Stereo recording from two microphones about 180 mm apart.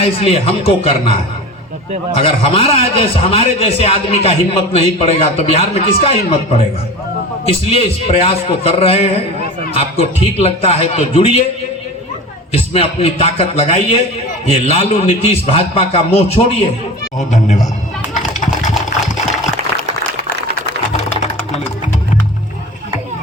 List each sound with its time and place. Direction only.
0.0 s a man's voice: 35° left (ahead or behind)
2.1 s a man's voice: 30° left (ahead or behind)
7.7 s a man's voice: 35° left (ahead or behind)
12.5 s a man's voice: 30° left (ahead or behind)
18.1 s a sound: 45° left (ahead or behind)